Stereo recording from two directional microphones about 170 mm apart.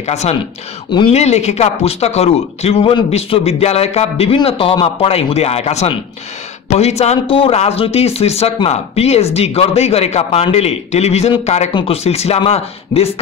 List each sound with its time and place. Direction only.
0.0 s a man's voice: 40° left (ahead or behind)
0.8 s speech: 25° left (ahead or behind)
1.1 s a man's voice: 40° left (ahead or behind)